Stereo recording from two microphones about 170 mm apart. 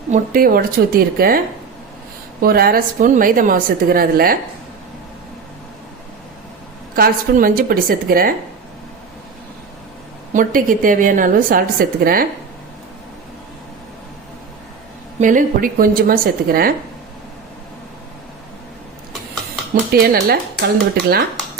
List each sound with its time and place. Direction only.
0.1 s a woman's voice: 60° right (ahead or behind)
2.4 s a woman's voice: 60° right (ahead or behind)
6.9 s a woman's voice: 55° right (ahead or behind)
10.3 s a woman's voice: 55° right (ahead or behind)
15.2 s a woman's voice: 50° right (ahead or behind)
19.9 s a woman's voice: 70° right (ahead or behind)